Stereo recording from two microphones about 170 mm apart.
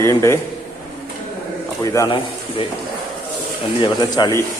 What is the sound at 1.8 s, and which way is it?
Speech, 15° left (ahead or behind).